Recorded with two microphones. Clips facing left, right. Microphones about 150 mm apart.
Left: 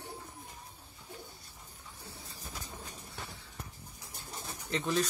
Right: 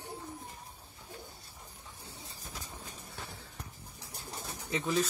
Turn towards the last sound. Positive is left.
turn(degrees=-5)  # may be behind; listen again after turning